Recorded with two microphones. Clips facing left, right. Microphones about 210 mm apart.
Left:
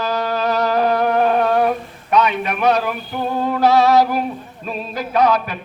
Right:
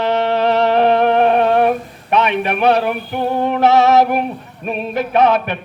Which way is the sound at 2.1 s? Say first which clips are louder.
Right 1 dB; 25° right (ahead or behind).